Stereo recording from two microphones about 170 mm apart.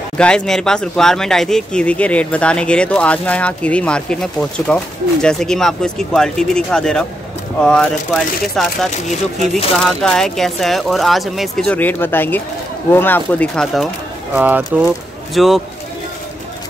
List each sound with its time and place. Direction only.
0.2 s speech: 5° left (ahead or behind)
14.3 s speech: 5° right (ahead or behind)